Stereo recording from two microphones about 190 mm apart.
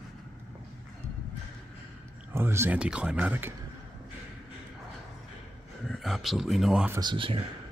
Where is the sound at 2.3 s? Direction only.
15° right (ahead or behind).